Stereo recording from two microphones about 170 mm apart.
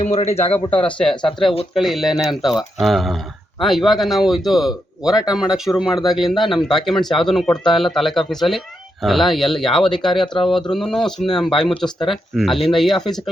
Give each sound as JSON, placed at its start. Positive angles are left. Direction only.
{"t": 0.0, "sound": "a man's voice", "side_deg": 40}
{"t": 0.8, "sound": "speech", "side_deg": 5}